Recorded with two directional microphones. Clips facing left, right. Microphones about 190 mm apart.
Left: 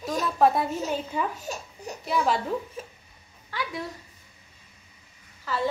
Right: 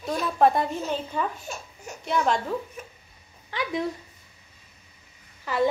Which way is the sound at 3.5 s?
20° right (ahead or behind).